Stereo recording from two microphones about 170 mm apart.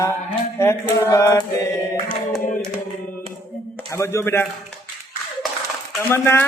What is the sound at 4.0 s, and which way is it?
Mantra, 15° left (ahead or behind).